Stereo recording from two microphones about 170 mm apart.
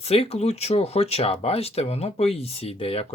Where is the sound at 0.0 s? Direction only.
35° left (ahead or behind).